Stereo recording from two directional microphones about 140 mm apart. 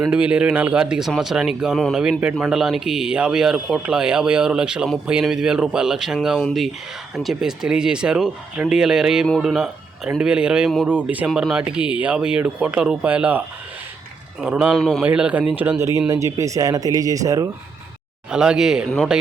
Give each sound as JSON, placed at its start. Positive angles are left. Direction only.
{"t": 0.1, "sound": "speech", "side_deg": -10}
{"t": 14.4, "sound": "speech", "side_deg": -10}
{"t": 14.8, "sound": "speech", "side_deg": 5}
{"t": 15.0, "sound": "speech", "side_deg": -10}
{"t": 18.3, "sound": "speech", "side_deg": -5}